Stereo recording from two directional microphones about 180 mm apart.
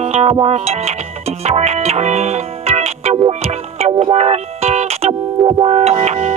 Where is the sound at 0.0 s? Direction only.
35° right (ahead or behind).